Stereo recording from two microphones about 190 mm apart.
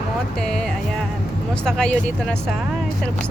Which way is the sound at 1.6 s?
5° left (ahead or behind).